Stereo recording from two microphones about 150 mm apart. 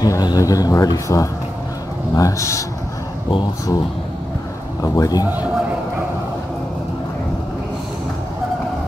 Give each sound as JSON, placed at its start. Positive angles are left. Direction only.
{"t": 0.0, "sound": "speech", "side_deg": 25}
{"t": 4.8, "sound": "speech", "side_deg": 25}
{"t": 5.2, "sound": "a man's voice", "side_deg": -10}